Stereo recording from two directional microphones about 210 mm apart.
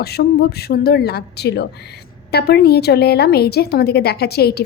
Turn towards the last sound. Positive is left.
turn(degrees=50)  # may be behind; listen again after turning